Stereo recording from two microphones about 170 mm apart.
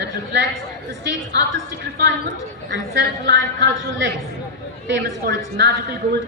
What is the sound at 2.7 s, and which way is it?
A woman's voice, 85° right.